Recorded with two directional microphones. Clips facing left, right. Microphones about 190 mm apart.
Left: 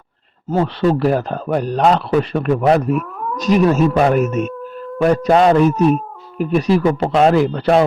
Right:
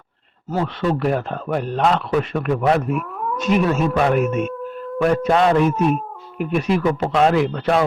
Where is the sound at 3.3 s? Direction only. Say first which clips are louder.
Left 5 dB; 40° left (ahead or behind).